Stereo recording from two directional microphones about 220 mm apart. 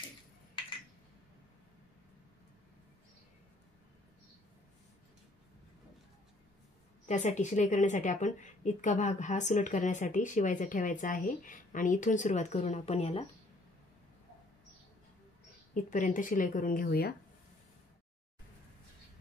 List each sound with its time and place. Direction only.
7.1 s a woman's voice: 30° left (ahead or behind)
15.7 s a woman's voice: 35° left (ahead or behind)